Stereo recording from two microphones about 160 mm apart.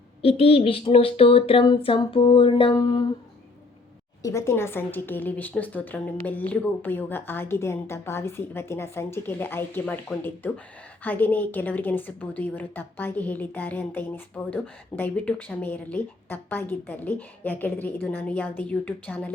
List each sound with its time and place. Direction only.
0.2 s speech: 40° left (ahead or behind)
4.2 s a woman's voice: 20° left (ahead or behind)